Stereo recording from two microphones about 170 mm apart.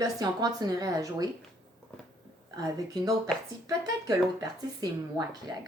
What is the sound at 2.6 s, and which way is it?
Speech, 20° right (ahead or behind).